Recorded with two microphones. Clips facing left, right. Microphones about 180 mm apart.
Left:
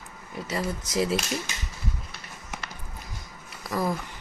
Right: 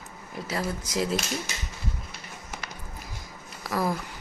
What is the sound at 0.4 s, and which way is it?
Speech, centre (ahead or behind).